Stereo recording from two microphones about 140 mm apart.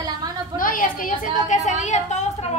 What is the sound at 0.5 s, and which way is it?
A woman's voice, 80° left.